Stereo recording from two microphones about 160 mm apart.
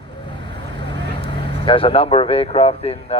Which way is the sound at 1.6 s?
35° left (ahead or behind).